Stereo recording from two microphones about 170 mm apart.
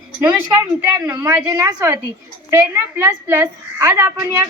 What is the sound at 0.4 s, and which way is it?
A woman's voice, 20° right (ahead or behind).